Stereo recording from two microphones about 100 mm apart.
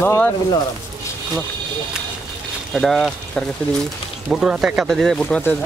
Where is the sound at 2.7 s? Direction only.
Centre (ahead or behind).